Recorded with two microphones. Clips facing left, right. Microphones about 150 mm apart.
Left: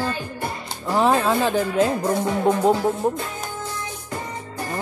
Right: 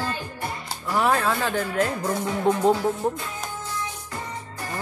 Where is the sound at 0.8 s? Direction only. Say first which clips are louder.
Left 4 dB; 25° left (ahead or behind).